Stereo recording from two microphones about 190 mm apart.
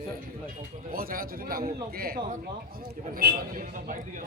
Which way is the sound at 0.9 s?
50° right (ahead or behind).